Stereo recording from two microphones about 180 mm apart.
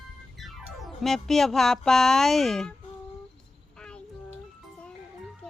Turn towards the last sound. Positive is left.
turn(degrees=5)  # may be behind; listen again after turning